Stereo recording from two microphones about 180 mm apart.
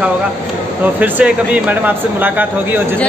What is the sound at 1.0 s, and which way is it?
Speech, 10° right (ahead or behind).